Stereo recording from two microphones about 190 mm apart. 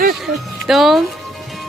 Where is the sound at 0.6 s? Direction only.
Centre (ahead or behind).